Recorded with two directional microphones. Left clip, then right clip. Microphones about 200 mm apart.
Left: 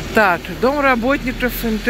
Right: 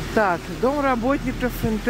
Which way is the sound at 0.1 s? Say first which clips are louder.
Left 6 dB; 10° right (ahead or behind).